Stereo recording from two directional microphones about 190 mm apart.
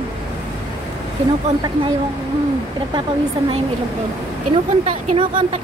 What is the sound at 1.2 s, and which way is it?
Speech, 35° right (ahead or behind).